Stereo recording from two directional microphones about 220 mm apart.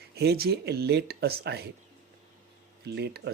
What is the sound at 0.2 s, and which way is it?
Speech, 45° right (ahead or behind).